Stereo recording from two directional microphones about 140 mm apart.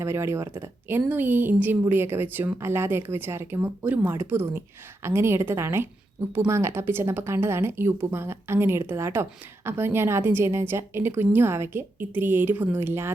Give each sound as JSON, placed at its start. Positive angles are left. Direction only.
{"t": 0.0, "sound": "a woman's voice", "side_deg": -20}